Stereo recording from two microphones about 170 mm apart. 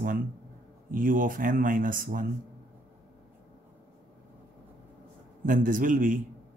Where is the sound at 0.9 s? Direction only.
55° right (ahead or behind).